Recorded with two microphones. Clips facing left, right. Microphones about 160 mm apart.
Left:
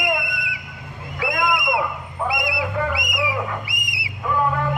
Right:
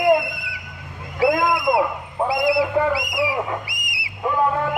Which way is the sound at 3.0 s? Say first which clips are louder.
Right 2 dB; 20° left (ahead or behind).